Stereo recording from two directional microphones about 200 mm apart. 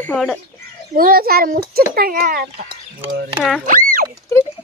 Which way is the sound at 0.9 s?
45° right (ahead or behind).